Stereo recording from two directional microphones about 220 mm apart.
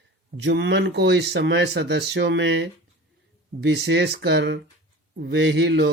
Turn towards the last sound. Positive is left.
turn(degrees=-50)  # may be behind; listen again after turning